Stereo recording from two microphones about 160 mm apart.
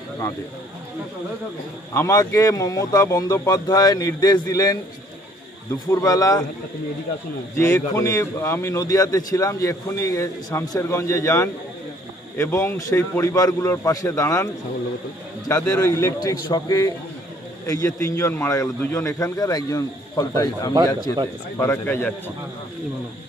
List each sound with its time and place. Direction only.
2.0 s a man's voice: 20° left (ahead or behind)
5.9 s a man's voice: 20° left (ahead or behind)
7.5 s a man's voice: 15° left (ahead or behind)
15.7 s a man's voice: 20° left (ahead or behind)